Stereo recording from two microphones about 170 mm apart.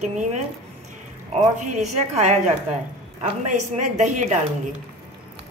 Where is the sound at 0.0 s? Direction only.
45° right (ahead or behind).